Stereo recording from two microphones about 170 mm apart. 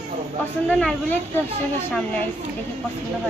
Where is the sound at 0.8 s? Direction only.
5° left (ahead or behind).